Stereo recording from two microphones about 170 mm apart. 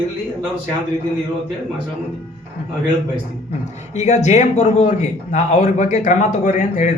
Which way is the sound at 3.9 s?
45° left (ahead or behind).